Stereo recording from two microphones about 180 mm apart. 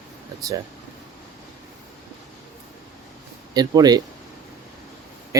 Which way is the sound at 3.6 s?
20° right (ahead or behind).